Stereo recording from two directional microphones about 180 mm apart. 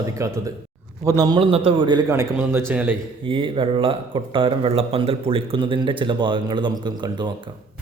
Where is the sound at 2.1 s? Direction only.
15° right (ahead or behind).